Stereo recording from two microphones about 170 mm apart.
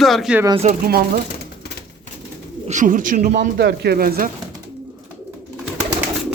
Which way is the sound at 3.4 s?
80° right.